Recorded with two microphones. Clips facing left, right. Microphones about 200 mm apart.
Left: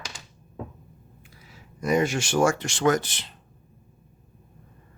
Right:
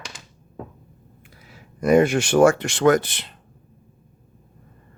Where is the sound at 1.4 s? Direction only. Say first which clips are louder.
Right 7 dB; 60° right (ahead or behind).